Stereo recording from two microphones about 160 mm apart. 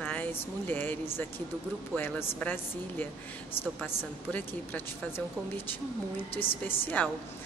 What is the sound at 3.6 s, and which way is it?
Speech, 10° left (ahead or behind).